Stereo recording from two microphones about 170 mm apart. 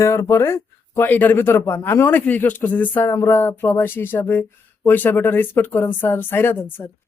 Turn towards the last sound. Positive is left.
turn(degrees=10)  # may be behind; listen again after turning